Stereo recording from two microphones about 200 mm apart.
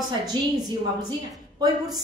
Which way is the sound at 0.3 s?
20° right (ahead or behind).